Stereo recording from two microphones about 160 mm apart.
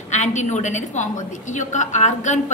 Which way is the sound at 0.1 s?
45° left (ahead or behind).